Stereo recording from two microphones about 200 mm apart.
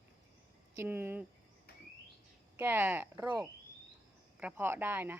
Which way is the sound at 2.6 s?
10° right (ahead or behind).